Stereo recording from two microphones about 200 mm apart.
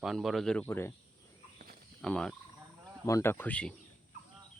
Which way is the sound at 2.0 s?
5° left (ahead or behind).